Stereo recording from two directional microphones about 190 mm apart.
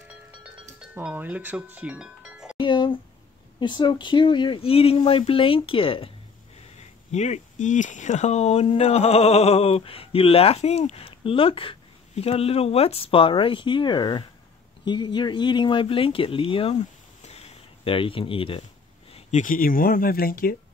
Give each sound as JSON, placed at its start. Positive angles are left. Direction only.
{"t": 0.9, "sound": "speech", "side_deg": -10}
{"t": 2.5, "sound": "speech", "side_deg": 25}
{"t": 17.2, "sound": "a sound", "side_deg": 35}
{"t": 19.1, "sound": "speech", "side_deg": 40}